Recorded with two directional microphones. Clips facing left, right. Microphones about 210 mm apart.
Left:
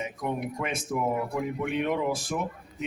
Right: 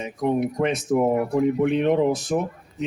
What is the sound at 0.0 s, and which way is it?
A man's voice, 35° right (ahead or behind).